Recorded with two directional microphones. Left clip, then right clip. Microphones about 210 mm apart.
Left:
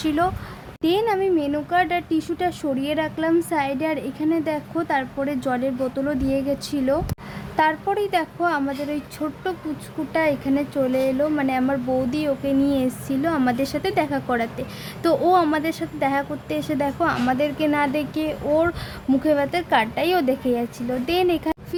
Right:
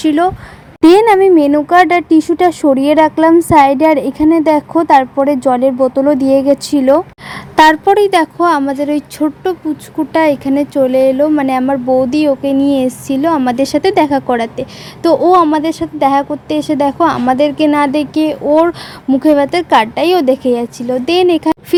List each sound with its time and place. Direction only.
0.0 s speech: 25° right (ahead or behind)
0.8 s speech: 35° right (ahead or behind)